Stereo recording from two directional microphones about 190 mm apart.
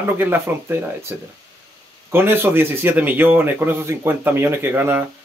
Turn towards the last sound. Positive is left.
turn(degrees=-10)  # may be behind; listen again after turning